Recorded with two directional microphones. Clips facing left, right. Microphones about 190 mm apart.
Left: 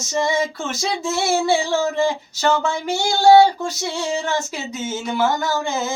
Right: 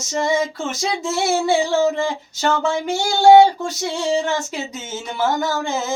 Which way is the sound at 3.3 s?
20° right (ahead or behind).